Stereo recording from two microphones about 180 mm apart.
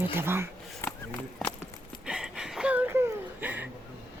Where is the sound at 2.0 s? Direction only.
5° right (ahead or behind).